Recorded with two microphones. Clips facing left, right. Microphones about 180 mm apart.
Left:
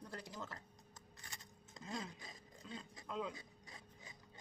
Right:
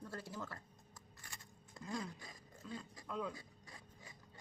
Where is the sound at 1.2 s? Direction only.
20° left (ahead or behind).